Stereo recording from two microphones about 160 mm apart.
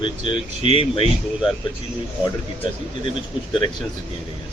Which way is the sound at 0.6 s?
35° left (ahead or behind).